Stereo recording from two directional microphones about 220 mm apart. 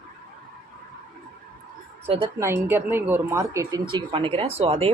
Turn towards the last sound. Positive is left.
turn(degrees=-25)  # may be behind; listen again after turning